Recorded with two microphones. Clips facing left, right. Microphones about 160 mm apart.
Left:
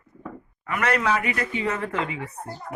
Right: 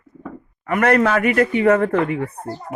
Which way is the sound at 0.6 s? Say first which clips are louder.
Right 7 dB; 50° right (ahead or behind).